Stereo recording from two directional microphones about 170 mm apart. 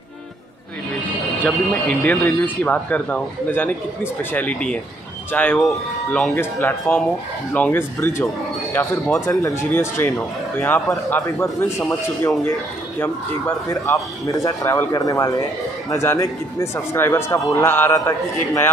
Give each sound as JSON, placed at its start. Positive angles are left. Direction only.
{"t": 1.4, "sound": "speech", "side_deg": 10}
{"t": 13.7, "sound": "speech", "side_deg": 20}